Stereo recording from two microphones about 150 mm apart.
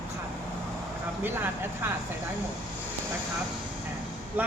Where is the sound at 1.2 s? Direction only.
15° right (ahead or behind).